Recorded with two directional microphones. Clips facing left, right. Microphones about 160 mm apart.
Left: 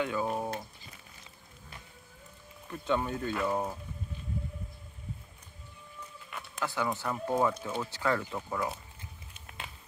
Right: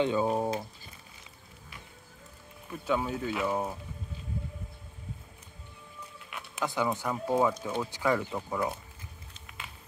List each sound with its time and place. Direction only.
0.0 s speech: 25° right (ahead or behind)
2.7 s speech: 5° right (ahead or behind)
6.1 s a sound: 5° right (ahead or behind)
6.6 s speech: 15° right (ahead or behind)